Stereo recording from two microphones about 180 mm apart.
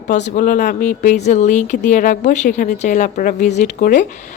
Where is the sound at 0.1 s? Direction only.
40° left (ahead or behind).